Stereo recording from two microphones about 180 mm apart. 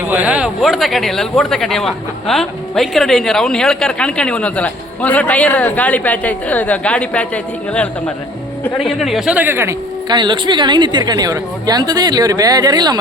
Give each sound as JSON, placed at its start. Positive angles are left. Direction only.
{"t": 0.1, "sound": "speech", "side_deg": -10}
{"t": 10.1, "sound": "a woman's voice", "side_deg": -25}